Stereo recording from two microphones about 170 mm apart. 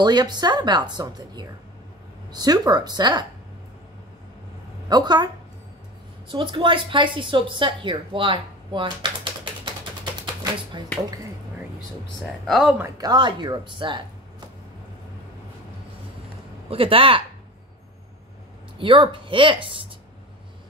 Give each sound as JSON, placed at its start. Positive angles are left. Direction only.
{"t": 0.0, "sound": "a woman's voice", "side_deg": -25}
{"t": 4.8, "sound": "a woman's voice", "side_deg": -25}
{"t": 10.2, "sound": "typewriter", "side_deg": -25}
{"t": 12.2, "sound": "speech", "side_deg": 0}
{"t": 12.8, "sound": "a woman's voice", "side_deg": -20}
{"t": 16.6, "sound": "speech", "side_deg": -35}
{"t": 18.8, "sound": "a woman's voice", "side_deg": -30}